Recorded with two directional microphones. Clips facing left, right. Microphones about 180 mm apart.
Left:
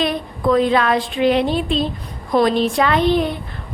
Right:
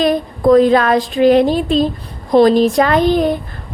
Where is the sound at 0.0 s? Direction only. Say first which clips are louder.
Right 6 dB; 40° right (ahead or behind).